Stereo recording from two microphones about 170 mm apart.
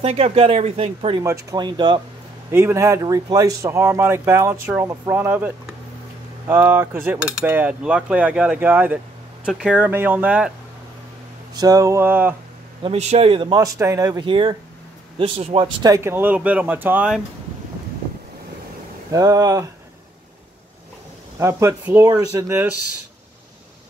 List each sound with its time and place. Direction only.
0.0 s speech: 35° right (ahead or behind)
1.2 s speech: 20° right (ahead or behind)
2.5 s cutlery: 15° right (ahead or behind)
11.5 s cutlery: 20° right (ahead or behind)
12.8 s speech: 40° right (ahead or behind)
13.7 s speech: 15° right (ahead or behind)
14.2 s speech: 30° right (ahead or behind)
15.8 s cutlery: 15° right (ahead or behind)
19.1 s speech: 20° right (ahead or behind)
21.4 s cutlery: 15° right (ahead or behind)